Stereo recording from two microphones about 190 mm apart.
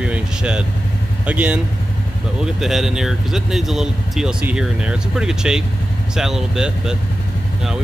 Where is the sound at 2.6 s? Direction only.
Centre (ahead or behind).